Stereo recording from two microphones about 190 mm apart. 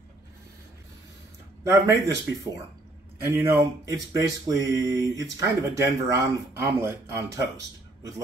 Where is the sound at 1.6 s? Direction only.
15° right (ahead or behind).